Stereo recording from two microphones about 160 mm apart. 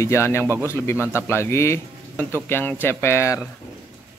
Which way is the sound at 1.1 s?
15° left (ahead or behind).